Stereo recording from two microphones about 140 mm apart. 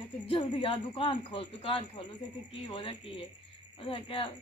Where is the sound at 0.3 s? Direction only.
35° left (ahead or behind).